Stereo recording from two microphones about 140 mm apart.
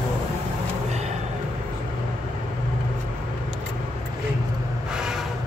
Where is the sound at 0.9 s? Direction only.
50° right (ahead or behind).